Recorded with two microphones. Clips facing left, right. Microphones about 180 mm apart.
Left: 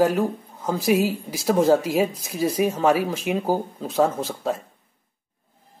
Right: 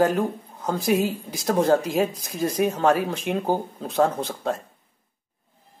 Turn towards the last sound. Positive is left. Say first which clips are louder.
# left 1 dB
turn(degrees=5)  # may be behind; listen again after turning